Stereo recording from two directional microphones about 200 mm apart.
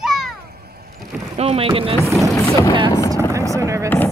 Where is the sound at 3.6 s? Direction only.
15° right (ahead or behind).